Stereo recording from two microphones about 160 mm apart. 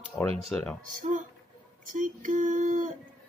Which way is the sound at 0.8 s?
50° right (ahead or behind).